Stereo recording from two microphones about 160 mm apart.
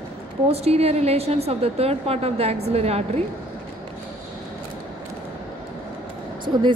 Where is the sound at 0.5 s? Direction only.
40° right (ahead or behind).